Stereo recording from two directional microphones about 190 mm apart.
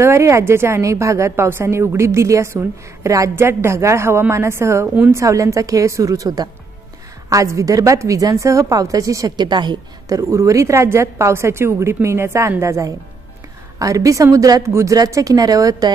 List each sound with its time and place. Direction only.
0.0 s a woman's voice: 15° right (ahead or behind)